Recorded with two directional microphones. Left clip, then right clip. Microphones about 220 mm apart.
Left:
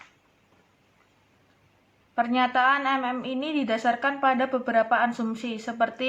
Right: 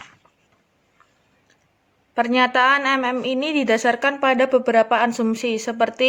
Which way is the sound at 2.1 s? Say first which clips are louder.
Right 6 dB; 50° right (ahead or behind).